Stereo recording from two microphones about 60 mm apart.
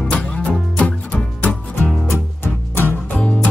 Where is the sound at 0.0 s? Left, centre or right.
Centre.